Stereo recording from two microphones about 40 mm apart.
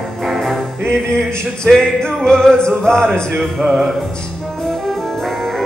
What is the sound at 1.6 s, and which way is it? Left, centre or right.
Music, centre.